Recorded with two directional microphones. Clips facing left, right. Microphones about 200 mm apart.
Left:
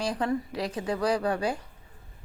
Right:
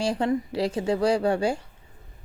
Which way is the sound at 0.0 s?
25° right (ahead or behind).